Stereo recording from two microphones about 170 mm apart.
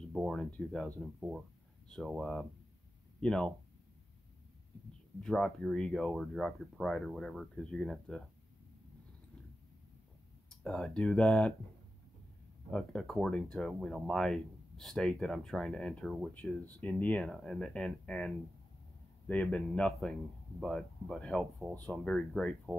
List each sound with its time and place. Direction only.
0.1 s speech: centre (ahead or behind)
5.2 s speech: centre (ahead or behind)
10.5 s speech: 5° left (ahead or behind)
12.7 s speech: 5° left (ahead or behind)